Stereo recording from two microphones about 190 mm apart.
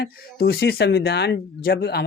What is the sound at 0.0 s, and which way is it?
Speech, 55° left (ahead or behind).